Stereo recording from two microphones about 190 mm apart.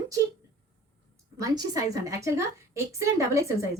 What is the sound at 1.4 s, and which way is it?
A woman's voice, 20° right (ahead or behind).